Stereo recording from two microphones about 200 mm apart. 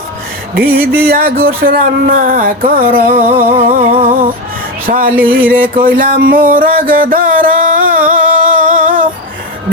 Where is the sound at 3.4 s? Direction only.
40° right (ahead or behind).